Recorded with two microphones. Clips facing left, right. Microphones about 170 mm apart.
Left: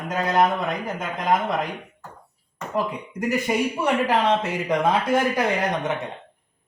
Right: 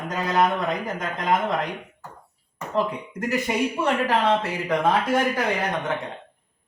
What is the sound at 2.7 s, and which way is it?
Speech, 10° left (ahead or behind).